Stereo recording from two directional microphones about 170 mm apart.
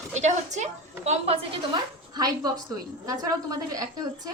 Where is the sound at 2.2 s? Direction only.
20° right (ahead or behind).